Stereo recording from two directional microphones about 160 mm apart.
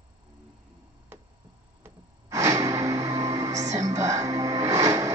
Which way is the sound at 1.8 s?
20° right (ahead or behind).